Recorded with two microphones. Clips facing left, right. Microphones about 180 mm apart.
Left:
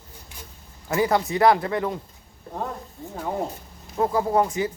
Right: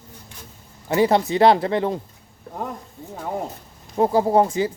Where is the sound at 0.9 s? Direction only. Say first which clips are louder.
Right 4 dB; 25° right (ahead or behind).